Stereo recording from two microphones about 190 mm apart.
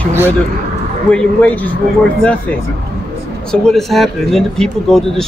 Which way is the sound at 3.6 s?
Centre (ahead or behind).